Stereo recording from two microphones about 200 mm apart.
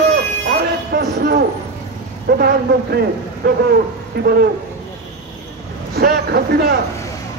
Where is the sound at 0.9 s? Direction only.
55° right (ahead or behind).